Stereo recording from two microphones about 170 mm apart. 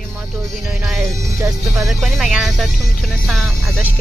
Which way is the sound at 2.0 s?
Centre (ahead or behind).